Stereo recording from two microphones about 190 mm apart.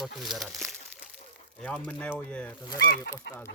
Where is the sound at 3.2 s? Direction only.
60° left (ahead or behind).